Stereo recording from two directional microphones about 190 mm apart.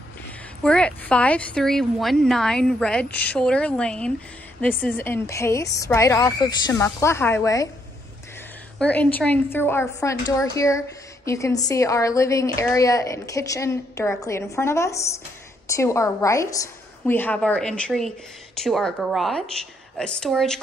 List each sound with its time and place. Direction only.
0.7 s a woman's voice: 5° left (ahead or behind)
8.7 s a woman's voice: 10° left (ahead or behind)